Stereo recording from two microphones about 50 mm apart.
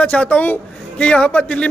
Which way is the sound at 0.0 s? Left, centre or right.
Left.